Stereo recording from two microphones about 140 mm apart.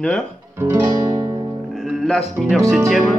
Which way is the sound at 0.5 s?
20° right (ahead or behind).